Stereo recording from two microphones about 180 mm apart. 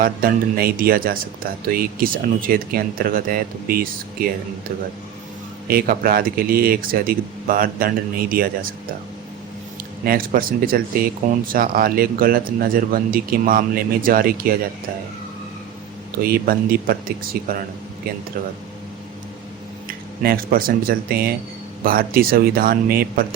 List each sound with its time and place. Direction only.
0.0 s speech: 55° right (ahead or behind)
5.6 s speech: 55° right (ahead or behind)
10.0 s speech: 55° right (ahead or behind)
16.2 s speech: 55° right (ahead or behind)
19.9 s speech: 55° right (ahead or behind)